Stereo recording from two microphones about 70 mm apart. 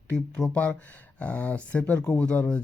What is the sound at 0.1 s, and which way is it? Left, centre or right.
Speech, centre.